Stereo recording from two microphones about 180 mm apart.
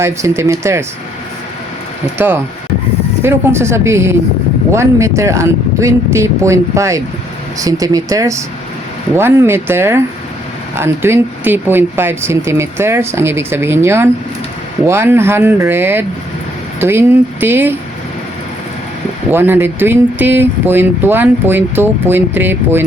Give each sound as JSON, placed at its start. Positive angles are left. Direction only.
{"t": 0.0, "sound": "speech", "side_deg": -15}
{"t": 2.1, "sound": "speech", "side_deg": -10}
{"t": 19.3, "sound": "speech", "side_deg": -10}